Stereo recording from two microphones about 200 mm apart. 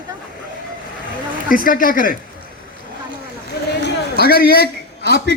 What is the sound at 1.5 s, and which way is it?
Speech, 45° left (ahead or behind).